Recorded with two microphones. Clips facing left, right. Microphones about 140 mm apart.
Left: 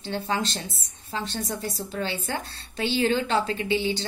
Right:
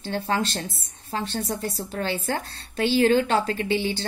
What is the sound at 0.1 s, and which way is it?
Speech, 50° right (ahead or behind).